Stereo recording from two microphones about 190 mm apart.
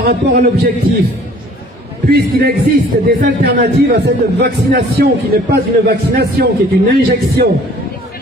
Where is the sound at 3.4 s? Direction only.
60° right (ahead or behind).